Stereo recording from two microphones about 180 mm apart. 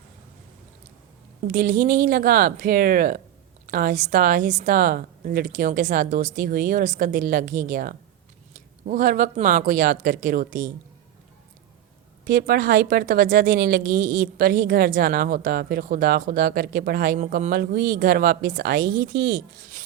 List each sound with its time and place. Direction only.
1.5 s speech: 50° right (ahead or behind)
12.2 s speech: 60° right (ahead or behind); by 19.4 s 75° right (ahead or behind)